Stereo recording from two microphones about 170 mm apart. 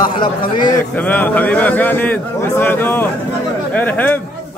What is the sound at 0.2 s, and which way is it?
Speech, 25° left (ahead or behind).